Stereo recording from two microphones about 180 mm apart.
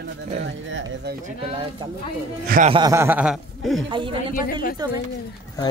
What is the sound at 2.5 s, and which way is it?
Speech, 55° right (ahead or behind).